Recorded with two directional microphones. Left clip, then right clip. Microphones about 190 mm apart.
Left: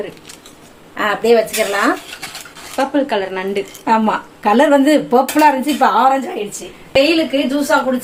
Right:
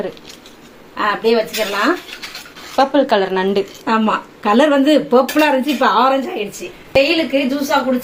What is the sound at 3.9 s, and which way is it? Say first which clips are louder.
Speech: left 4 dB; 15° left (ahead or behind).